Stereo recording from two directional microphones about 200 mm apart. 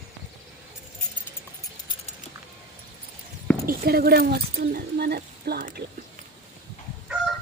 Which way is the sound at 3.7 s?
50° right (ahead or behind).